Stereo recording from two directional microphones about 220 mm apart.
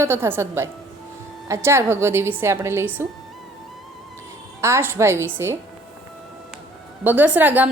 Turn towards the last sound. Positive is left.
turn(degrees=-10)  # may be behind; listen again after turning